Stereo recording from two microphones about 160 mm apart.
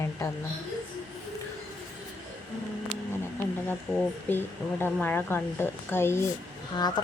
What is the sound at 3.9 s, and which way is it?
Speech, 15° right (ahead or behind).